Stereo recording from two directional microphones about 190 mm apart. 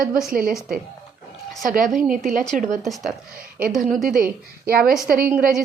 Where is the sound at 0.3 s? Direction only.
50° right (ahead or behind).